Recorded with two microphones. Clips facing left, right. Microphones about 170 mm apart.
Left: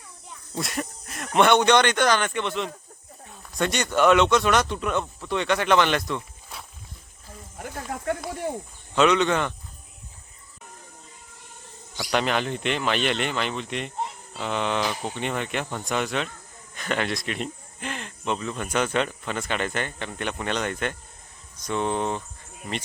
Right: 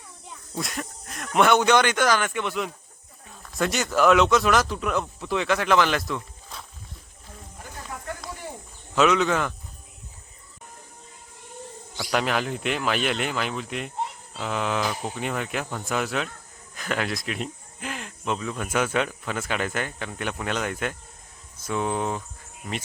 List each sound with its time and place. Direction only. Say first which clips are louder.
0.6 s speech: left 3 dB; 5° left (ahead or behind)
7.6 s snake: left 6 dB; 60° left (ahead or behind)
9.0 s speech: left 1 dB; centre (ahead or behind)
12.1 s speech: left 1 dB; 5° right (ahead or behind)